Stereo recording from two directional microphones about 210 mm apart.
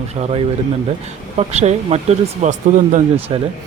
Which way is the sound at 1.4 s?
30° right (ahead or behind).